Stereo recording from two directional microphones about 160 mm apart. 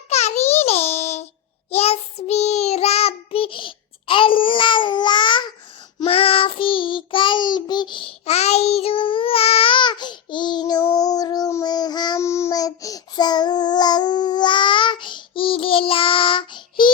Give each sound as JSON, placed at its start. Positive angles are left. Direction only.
{"t": 0.1, "sound": "music for children", "side_deg": 40}
{"t": 1.7, "sound": "child singing", "side_deg": 40}